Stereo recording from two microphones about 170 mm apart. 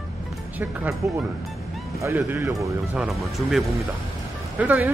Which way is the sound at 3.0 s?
Centre (ahead or behind).